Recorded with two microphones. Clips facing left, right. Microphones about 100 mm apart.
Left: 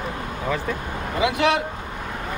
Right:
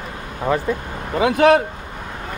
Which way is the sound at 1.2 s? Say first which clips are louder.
Right 7 dB; 45° right (ahead or behind).